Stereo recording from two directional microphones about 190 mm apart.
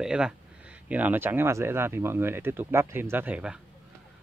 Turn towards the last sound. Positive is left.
turn(degrees=-5)  # may be behind; listen again after turning